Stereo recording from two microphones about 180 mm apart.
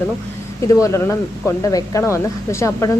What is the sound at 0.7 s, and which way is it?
Speech, 15° left (ahead or behind).